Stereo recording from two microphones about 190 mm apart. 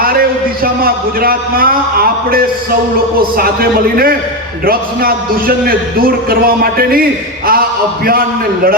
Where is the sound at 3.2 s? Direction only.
50° right (ahead or behind).